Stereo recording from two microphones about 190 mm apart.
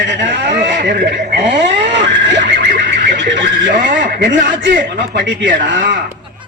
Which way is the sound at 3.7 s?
45° right (ahead or behind).